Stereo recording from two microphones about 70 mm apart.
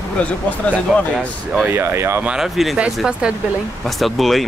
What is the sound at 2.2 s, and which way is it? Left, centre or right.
Speech, centre.